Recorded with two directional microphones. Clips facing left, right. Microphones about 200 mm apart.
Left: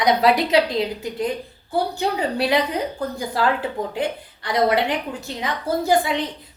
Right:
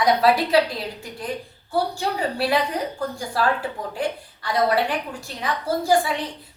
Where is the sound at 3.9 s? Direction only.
20° left (ahead or behind).